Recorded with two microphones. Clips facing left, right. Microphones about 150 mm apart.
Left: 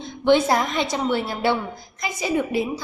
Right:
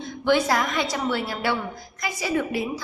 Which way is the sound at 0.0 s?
25° left (ahead or behind).